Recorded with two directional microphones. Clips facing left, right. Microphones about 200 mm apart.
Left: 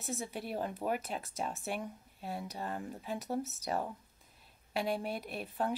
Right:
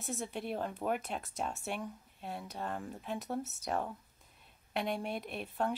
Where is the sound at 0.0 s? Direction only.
5° left (ahead or behind).